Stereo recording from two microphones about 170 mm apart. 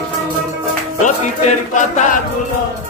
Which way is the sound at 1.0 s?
45° left (ahead or behind).